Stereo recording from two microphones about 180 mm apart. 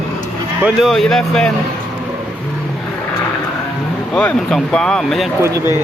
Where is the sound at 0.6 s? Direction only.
Centre (ahead or behind).